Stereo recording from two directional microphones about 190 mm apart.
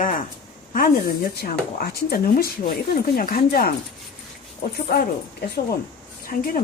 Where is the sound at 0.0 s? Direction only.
45° left (ahead or behind).